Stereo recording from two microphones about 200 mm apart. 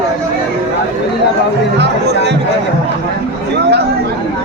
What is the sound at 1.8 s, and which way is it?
Speech, 55° right (ahead or behind).